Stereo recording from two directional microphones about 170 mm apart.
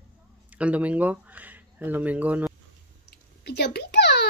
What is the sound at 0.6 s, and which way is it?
Speech, 10° right (ahead or behind).